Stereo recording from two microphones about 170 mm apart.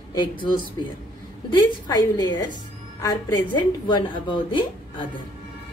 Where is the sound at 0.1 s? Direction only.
25° left (ahead or behind).